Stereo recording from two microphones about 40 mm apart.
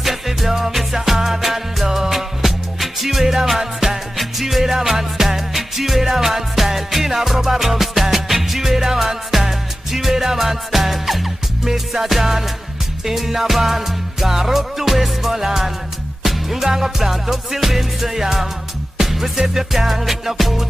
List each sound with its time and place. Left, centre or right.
0.0 s music: centre